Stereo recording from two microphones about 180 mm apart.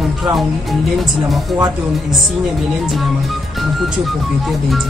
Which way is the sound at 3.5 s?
Centre (ahead or behind).